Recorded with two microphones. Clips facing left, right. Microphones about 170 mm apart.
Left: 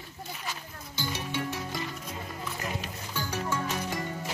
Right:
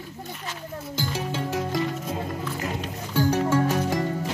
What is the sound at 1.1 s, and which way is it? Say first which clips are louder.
Music: right 5 dB; 90° right.